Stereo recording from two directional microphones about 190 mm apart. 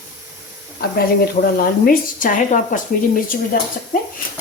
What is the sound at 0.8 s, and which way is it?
A woman's voice, 55° left (ahead or behind).